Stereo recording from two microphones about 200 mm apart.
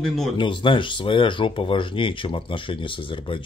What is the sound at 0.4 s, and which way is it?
Speech, 25° left (ahead or behind).